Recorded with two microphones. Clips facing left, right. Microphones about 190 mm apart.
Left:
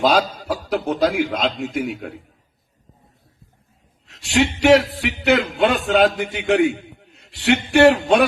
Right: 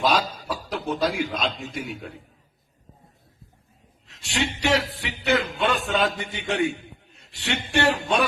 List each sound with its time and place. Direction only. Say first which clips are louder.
0.0 s chuckle: left 5 dB; 65° left (ahead or behind)
0.7 s a man's voice: left 6 dB; 60° left (ahead or behind)
4.1 s a man's voice: left 9 dB; 90° left; by 8.3 s 70° left (ahead or behind)